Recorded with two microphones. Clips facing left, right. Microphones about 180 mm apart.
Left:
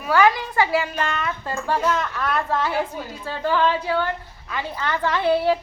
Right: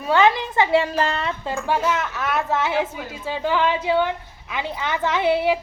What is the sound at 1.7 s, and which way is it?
A woman's voice, 5° right (ahead or behind).